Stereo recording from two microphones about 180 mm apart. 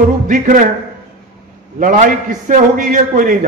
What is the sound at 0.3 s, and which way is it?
Speech, 50° right (ahead or behind).